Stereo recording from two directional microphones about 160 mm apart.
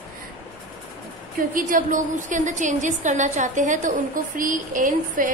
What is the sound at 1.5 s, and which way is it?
A woman's voice, 55° right (ahead or behind).